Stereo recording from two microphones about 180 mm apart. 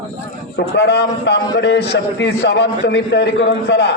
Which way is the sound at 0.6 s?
70° left (ahead or behind).